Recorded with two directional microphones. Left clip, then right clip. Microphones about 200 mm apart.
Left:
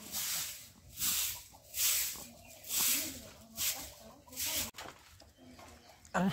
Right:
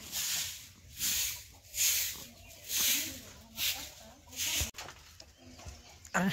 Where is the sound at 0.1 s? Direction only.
65° left (ahead or behind).